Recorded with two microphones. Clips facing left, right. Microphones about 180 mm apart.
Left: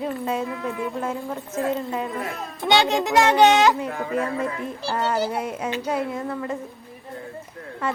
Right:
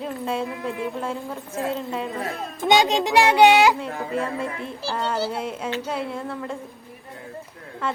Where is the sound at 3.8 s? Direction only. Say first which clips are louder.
Left 1 dB; 50° left (ahead or behind).